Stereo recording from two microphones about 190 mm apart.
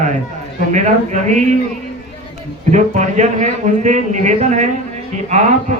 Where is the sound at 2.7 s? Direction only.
40° right (ahead or behind).